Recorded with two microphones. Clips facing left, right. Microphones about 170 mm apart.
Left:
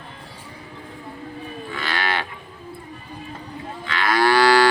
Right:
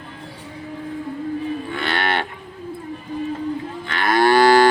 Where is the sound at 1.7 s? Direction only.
60° right (ahead or behind).